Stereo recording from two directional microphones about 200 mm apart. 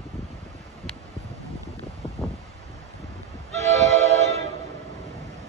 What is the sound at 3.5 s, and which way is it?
Train, 35° right (ahead or behind).